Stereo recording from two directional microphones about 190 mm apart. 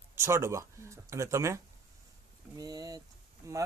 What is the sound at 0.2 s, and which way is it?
Speech, 15° right (ahead or behind).